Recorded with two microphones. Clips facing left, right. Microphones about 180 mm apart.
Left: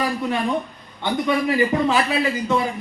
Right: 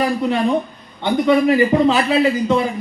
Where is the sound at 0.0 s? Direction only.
25° right (ahead or behind).